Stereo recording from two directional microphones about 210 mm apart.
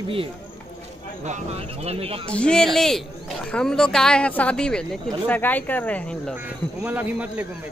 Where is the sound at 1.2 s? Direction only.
30° right (ahead or behind).